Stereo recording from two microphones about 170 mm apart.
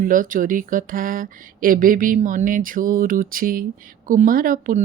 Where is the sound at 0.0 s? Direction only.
50° right (ahead or behind).